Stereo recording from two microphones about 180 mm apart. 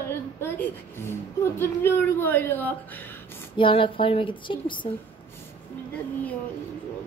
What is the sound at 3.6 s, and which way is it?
Speech, 30° left (ahead or behind).